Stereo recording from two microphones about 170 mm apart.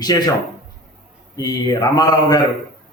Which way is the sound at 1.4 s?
25° left (ahead or behind).